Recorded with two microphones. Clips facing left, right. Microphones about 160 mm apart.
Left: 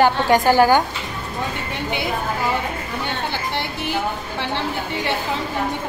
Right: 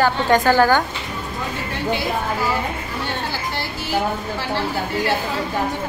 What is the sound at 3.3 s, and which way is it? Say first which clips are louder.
Music: left 1 dB; 20° left (ahead or behind).